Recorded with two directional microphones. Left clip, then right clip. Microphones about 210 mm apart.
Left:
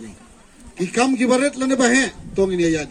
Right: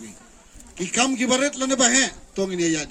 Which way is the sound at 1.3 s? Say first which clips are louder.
Left 3 dB; 45° right (ahead or behind).